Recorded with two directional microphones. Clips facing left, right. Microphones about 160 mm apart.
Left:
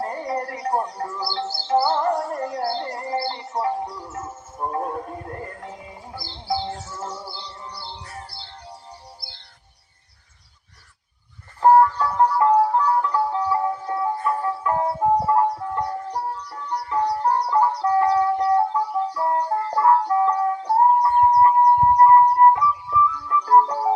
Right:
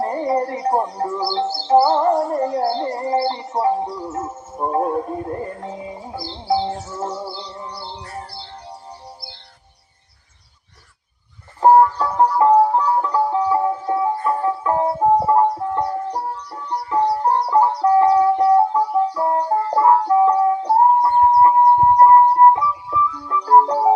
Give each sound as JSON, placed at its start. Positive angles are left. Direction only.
{"t": 0.0, "sound": "speech", "side_deg": -25}
{"t": 11.6, "sound": "music", "side_deg": -25}
{"t": 20.3, "sound": "a sound", "side_deg": -30}